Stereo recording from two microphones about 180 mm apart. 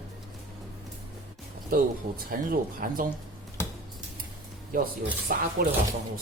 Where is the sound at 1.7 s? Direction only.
50° right (ahead or behind).